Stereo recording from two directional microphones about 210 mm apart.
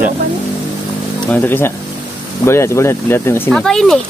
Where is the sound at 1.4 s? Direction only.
10° left (ahead or behind).